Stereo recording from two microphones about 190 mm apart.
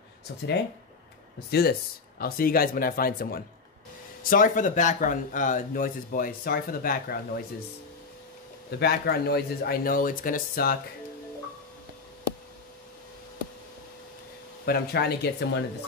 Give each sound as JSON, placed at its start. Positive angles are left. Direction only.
{"t": 1.5, "sound": "speech", "side_deg": 55}
{"t": 8.7, "sound": "speech", "side_deg": 55}
{"t": 14.7, "sound": "speech", "side_deg": 55}